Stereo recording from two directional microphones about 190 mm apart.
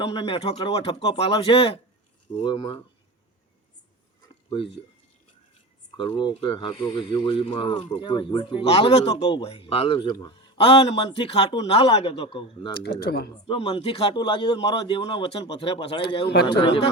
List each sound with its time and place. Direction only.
0.0 s speech: 30° left (ahead or behind)
4.4 s speech: 30° left (ahead or behind)
6.0 s speech: 25° left (ahead or behind)
12.8 s speech: 60° left (ahead or behind)
13.3 s speech: 25° left (ahead or behind)
16.2 s speech: 60° left (ahead or behind)
16.6 s speech: 30° left (ahead or behind)